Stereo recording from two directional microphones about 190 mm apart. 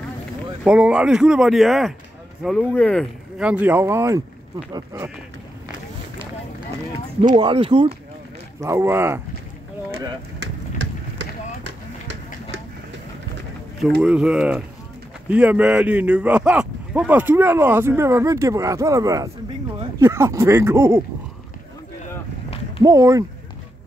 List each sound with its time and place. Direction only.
0.7 s speech: 5° right (ahead or behind)
3.3 s speech: 5° right (ahead or behind)
7.3 s speech: 30° right (ahead or behind)
8.5 s speech: 15° right (ahead or behind)
13.7 s speech: centre (ahead or behind)
22.8 s speech: 15° right (ahead or behind)